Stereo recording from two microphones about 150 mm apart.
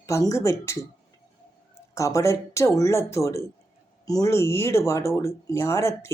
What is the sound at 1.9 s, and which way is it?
Speech, 20° left (ahead or behind).